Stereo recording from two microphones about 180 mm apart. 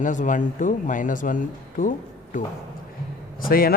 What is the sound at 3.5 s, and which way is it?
Speech, 55° left (ahead or behind).